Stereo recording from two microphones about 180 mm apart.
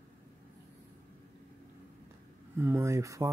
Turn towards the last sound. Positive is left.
turn(degrees=-15)  # may be behind; listen again after turning